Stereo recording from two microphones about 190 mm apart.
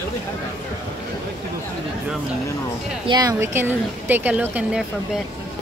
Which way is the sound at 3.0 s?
20° right (ahead or behind).